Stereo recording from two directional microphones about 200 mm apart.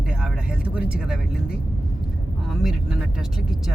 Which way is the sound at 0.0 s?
5° right (ahead or behind).